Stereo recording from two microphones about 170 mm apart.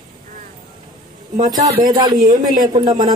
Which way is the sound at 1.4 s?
20° right (ahead or behind).